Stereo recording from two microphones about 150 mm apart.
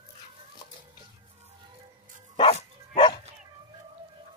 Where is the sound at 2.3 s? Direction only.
35° left (ahead or behind).